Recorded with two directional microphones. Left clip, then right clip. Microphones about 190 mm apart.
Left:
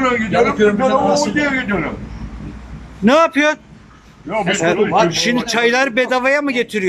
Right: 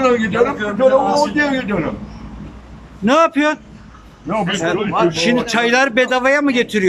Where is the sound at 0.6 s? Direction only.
35° left (ahead or behind).